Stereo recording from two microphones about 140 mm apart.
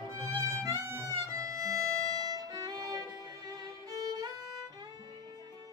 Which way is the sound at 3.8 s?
30° right (ahead or behind).